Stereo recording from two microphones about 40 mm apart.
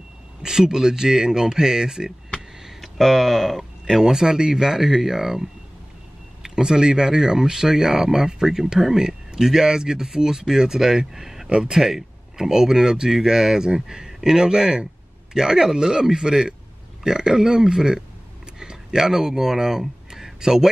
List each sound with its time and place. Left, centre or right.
0.4 s speech: centre
2.6 s speech: centre
4.0 s speech: centre
6.4 s speech: centre